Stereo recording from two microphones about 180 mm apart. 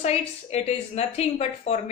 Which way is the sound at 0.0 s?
35° left (ahead or behind).